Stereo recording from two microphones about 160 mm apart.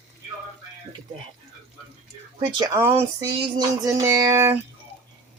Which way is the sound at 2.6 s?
15° right (ahead or behind).